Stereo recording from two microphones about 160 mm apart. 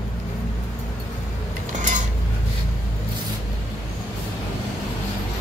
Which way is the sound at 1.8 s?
50° right (ahead or behind).